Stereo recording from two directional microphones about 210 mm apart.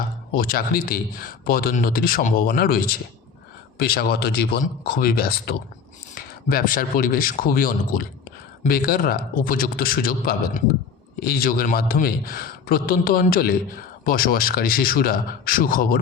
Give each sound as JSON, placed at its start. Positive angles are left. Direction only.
{"t": 0.3, "sound": "a man's voice", "side_deg": 45}